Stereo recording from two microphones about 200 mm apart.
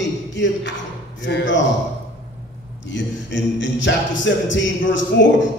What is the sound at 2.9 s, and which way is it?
A capella, 65° left (ahead or behind).